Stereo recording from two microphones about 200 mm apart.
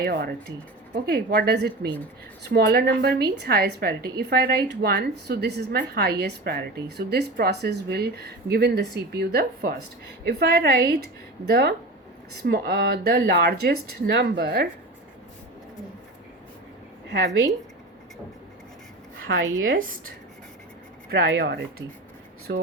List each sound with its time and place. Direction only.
0.0 s a woman's voice: 55° right (ahead or behind)
1.9 s speech: 10° left (ahead or behind)
2.5 s a woman's voice: 55° right (ahead or behind)
19.3 s speech: 65° right (ahead or behind)
19.7 s a woman's voice: 45° right (ahead or behind)
21.1 s speech: 60° right (ahead or behind)